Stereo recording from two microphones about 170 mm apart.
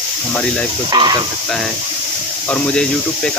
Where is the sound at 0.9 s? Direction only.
25° right (ahead or behind).